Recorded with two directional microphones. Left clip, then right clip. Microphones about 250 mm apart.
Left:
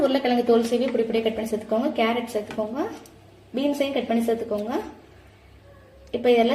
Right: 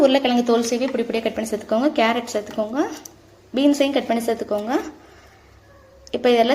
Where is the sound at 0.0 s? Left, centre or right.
Centre.